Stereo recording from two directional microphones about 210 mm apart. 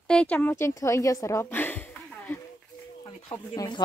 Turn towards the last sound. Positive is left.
turn(degrees=15)  # may be behind; listen again after turning